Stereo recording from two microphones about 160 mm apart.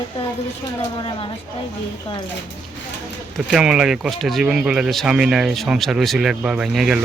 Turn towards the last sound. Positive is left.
turn(degrees=-5)  # may be behind; listen again after turning